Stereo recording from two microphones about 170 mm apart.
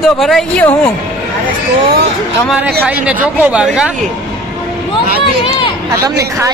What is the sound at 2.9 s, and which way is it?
A woman's voice, 10° right (ahead or behind).